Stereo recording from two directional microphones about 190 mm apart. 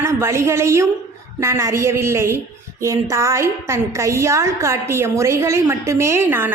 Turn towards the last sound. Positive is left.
turn(degrees=-10)  # may be behind; listen again after turning